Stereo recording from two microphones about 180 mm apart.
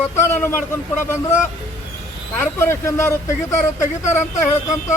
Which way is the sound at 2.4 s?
15° left (ahead or behind).